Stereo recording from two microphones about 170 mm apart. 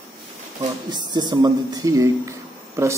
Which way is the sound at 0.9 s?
25° right (ahead or behind).